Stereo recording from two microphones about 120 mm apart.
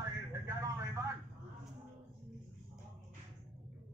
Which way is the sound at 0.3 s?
25° right (ahead or behind).